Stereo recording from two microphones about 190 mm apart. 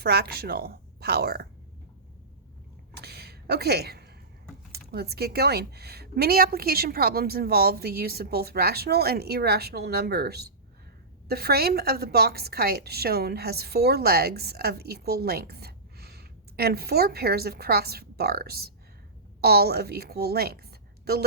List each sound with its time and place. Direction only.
0.0 s a woman's voice: 60° right (ahead or behind)
2.9 s a sound: 60° right (ahead or behind)
4.7 s a woman's voice: 55° right (ahead or behind)